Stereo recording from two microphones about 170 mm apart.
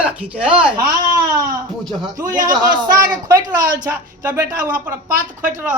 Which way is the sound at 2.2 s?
50° right (ahead or behind).